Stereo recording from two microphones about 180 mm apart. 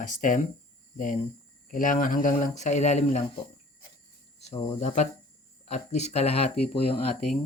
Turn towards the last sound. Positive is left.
turn(degrees=35)  # may be behind; listen again after turning